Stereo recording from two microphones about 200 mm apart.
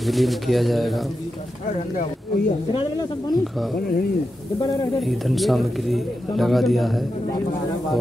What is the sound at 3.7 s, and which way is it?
Speech, 50° left (ahead or behind).